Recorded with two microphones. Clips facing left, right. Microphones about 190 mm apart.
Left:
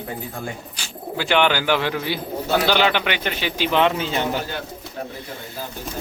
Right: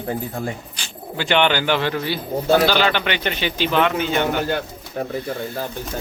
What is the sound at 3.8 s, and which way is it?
Speech, 30° left (ahead or behind).